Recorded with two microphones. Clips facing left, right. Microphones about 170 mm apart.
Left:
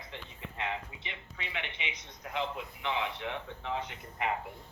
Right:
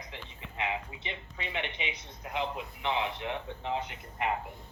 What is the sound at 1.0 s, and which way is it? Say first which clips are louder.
A man's voice: right 4 dB; 25° right (ahead or behind).